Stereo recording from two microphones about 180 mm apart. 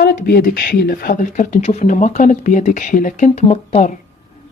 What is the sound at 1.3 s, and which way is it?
Speech, 45° left (ahead or behind).